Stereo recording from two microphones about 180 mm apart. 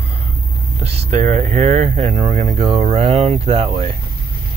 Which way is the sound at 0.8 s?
35° right (ahead or behind).